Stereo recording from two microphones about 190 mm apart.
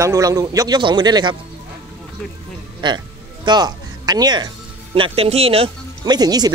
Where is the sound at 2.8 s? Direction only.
25° right (ahead or behind).